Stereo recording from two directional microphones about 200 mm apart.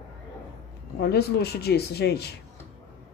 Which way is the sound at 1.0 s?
55° left (ahead or behind).